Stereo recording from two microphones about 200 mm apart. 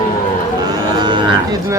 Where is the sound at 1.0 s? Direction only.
20° right (ahead or behind).